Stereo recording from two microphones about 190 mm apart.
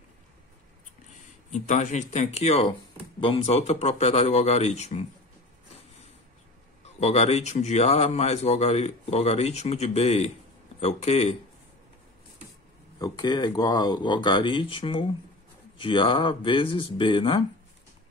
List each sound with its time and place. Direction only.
1.5 s speech: 40° left (ahead or behind)
6.8 s speech: 35° left (ahead or behind)
13.0 s speech: 20° left (ahead or behind)